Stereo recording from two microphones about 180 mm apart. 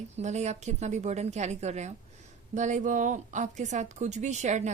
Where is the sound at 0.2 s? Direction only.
40° right (ahead or behind).